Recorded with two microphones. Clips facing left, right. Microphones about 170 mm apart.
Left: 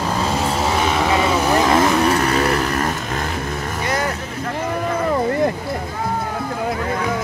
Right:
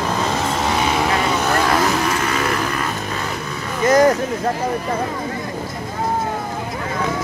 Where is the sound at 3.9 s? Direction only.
40° right (ahead or behind).